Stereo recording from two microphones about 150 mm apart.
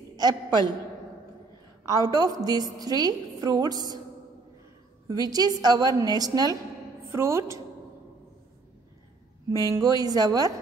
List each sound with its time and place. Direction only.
0.1 s a woman's voice: 25° right (ahead or behind)
1.9 s a woman's voice: 25° right (ahead or behind)
5.0 s a woman's voice: 25° right (ahead or behind)
9.5 s a woman's voice: 25° right (ahead or behind)